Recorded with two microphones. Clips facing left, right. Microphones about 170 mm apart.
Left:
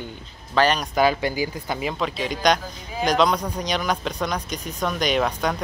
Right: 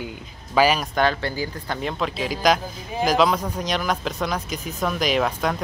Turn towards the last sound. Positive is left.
turn(degrees=0)  # may be behind; listen again after turning